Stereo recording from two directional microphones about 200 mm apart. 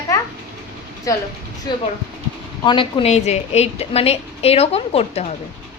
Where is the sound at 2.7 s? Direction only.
30° left (ahead or behind).